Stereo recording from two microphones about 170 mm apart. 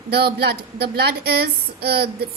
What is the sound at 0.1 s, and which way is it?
Speech, 70° right (ahead or behind).